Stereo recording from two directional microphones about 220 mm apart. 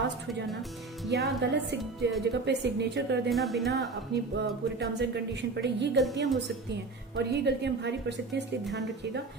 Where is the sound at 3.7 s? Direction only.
50° right (ahead or behind).